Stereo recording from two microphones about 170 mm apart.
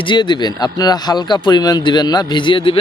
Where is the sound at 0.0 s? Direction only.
25° left (ahead or behind).